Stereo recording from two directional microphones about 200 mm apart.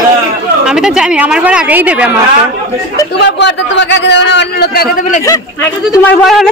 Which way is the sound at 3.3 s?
60° left (ahead or behind).